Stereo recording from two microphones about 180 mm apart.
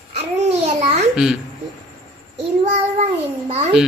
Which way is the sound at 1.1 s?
5° right (ahead or behind).